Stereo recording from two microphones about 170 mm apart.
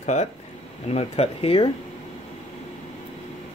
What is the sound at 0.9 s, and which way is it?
Speech, 35° left (ahead or behind).